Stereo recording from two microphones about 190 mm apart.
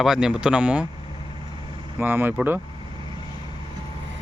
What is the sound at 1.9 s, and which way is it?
Speech, 10° right (ahead or behind).